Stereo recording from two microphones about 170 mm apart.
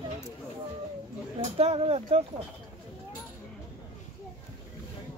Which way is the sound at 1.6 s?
35° right (ahead or behind).